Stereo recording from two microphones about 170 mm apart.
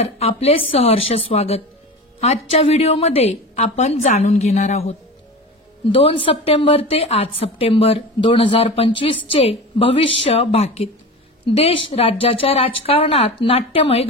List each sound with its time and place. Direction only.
0.2 s a woman's voice: 35° left (ahead or behind)